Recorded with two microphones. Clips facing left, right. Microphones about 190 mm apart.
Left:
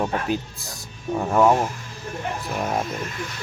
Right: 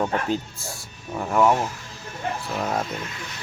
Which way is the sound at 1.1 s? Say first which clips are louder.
Left 3 dB; 30° left (ahead or behind).